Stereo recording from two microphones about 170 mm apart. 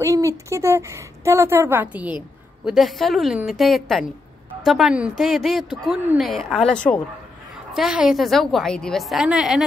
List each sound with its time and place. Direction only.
0.0 s a woman's voice: 15° right (ahead or behind)